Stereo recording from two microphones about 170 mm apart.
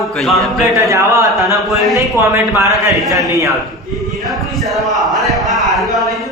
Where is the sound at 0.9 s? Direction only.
20° right (ahead or behind).